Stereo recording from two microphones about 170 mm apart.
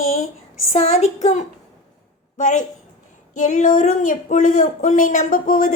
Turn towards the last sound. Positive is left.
turn(degrees=50)  # may be behind; listen again after turning